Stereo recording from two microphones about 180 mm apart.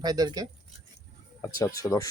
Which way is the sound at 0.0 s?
20° right (ahead or behind).